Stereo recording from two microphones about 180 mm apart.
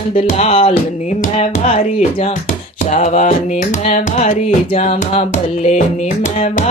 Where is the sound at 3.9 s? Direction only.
45° left (ahead or behind).